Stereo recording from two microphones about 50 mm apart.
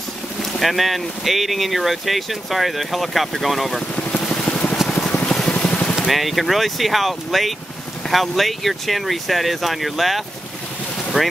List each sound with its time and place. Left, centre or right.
0.5 s speech: centre
3.8 s vehicle: left
4.5 s a sound: left
4.9 s vehicle: left
5.9 s speech: centre